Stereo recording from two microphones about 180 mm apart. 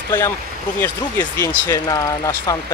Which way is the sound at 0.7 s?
15° left (ahead or behind).